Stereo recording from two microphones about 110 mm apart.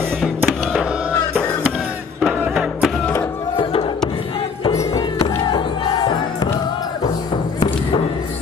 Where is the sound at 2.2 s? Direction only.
5° right (ahead or behind).